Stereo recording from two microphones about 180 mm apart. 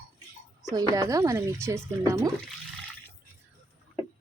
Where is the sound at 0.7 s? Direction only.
20° right (ahead or behind).